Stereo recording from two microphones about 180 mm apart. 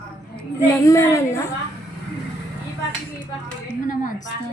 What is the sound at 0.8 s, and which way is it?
Speech, 15° left (ahead or behind).